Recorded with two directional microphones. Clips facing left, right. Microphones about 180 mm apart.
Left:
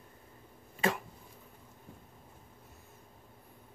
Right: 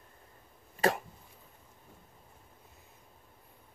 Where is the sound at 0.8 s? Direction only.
40° right (ahead or behind).